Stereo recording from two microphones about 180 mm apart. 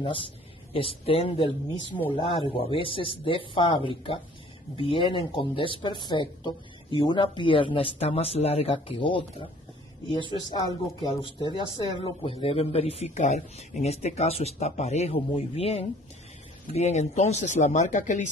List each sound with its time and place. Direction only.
0.7 s speech: 30° left (ahead or behind)